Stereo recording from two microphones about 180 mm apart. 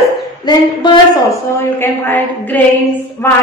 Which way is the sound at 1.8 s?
10° left (ahead or behind).